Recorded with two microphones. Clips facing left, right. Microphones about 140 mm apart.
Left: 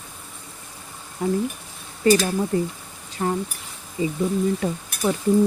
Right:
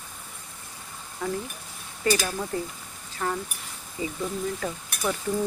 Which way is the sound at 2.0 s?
25° left (ahead or behind).